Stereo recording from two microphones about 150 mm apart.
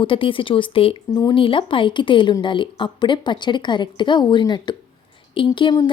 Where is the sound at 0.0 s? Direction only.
35° left (ahead or behind).